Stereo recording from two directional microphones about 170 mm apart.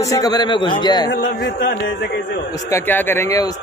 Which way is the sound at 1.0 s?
65° left (ahead or behind).